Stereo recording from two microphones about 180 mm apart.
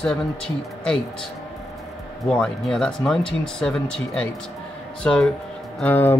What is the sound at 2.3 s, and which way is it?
Speech, 5° left (ahead or behind).